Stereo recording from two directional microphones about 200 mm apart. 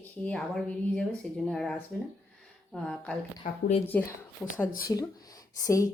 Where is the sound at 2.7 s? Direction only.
Centre (ahead or behind).